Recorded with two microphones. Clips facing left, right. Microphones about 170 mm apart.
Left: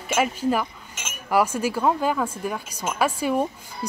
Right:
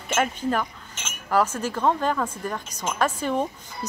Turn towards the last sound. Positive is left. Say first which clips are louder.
# left 2 dB
turn(degrees=10)  # may be behind; listen again after turning